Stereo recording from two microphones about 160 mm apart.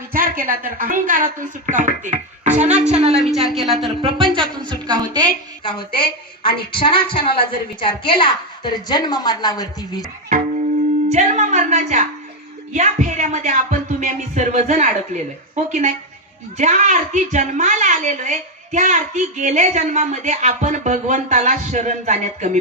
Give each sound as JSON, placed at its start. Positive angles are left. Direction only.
{"t": 0.1, "sound": "a woman's voice", "side_deg": -60}
{"t": 3.5, "sound": "a woman's voice", "side_deg": 0}
{"t": 3.8, "sound": "a woman's voice", "side_deg": -35}
{"t": 5.6, "sound": "a woman's voice", "side_deg": 30}
{"t": 11.1, "sound": "a woman's voice", "side_deg": -50}